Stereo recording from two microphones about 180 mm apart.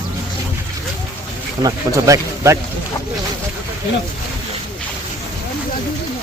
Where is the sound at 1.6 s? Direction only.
20° right (ahead or behind).